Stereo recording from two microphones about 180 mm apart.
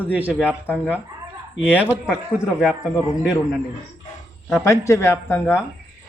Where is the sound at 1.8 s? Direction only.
5° right (ahead or behind).